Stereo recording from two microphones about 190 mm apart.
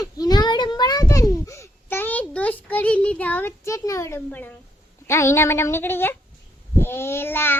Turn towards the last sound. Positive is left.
turn(degrees=10)  # may be behind; listen again after turning